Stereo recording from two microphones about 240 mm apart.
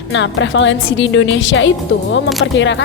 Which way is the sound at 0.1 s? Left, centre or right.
Left.